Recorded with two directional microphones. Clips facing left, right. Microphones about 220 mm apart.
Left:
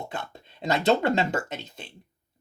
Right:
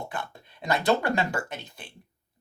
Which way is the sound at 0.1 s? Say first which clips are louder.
Even; 25° left (ahead or behind).